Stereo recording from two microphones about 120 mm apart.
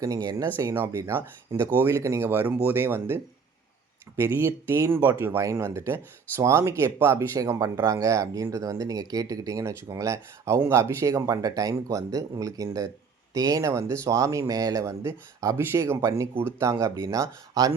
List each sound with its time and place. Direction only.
0.0 s speech: 30° right (ahead or behind)
4.2 s speech: 20° right (ahead or behind)